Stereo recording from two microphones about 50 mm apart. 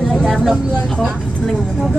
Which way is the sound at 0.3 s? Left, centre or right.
Centre.